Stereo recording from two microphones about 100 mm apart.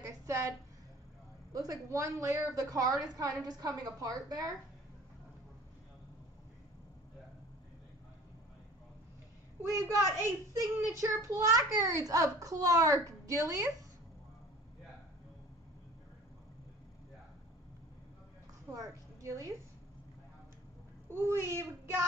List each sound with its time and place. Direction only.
0.0 s a sound: 30° right (ahead or behind)
1.5 s a child's voice: 40° right (ahead or behind)
9.6 s a woman's voice: 25° right (ahead or behind)
18.7 s a woman's voice: 35° right (ahead or behind)
21.1 s a woman's voice: 25° right (ahead or behind)